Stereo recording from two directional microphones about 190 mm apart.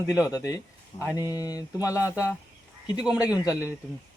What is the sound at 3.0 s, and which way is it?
Speech, 5° right (ahead or behind).